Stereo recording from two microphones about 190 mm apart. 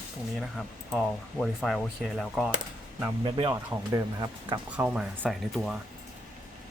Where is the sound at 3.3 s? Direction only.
25° right (ahead or behind).